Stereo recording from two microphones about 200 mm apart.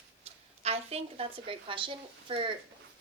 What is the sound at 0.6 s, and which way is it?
A woman's voice, 30° right (ahead or behind).